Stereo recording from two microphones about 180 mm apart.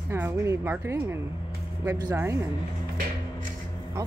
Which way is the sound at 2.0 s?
15° right (ahead or behind).